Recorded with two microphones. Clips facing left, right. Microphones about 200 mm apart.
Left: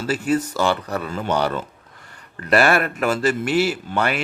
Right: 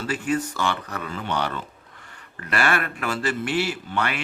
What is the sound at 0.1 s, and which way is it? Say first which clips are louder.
Speech: left 5 dB; 40° left (ahead or behind).